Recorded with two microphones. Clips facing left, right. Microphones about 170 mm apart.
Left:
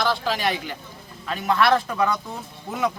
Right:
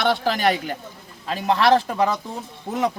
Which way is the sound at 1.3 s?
30° right (ahead or behind).